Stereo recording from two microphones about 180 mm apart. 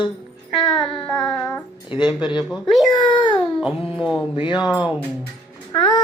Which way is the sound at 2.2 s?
25° left (ahead or behind).